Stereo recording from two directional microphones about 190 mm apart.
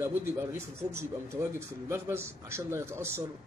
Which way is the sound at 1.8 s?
15° right (ahead or behind).